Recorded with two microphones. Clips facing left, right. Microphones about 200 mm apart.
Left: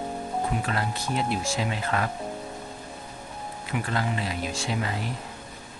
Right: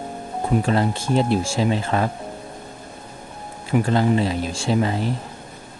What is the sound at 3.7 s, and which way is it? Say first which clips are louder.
Speech: right 11 dB; 30° right (ahead or behind).